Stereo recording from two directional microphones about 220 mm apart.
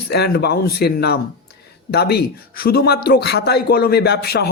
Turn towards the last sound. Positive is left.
turn(degrees=45)  # may be behind; listen again after turning